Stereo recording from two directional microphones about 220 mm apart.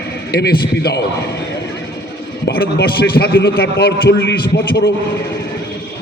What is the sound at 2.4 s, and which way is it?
A man's voice, 45° left (ahead or behind).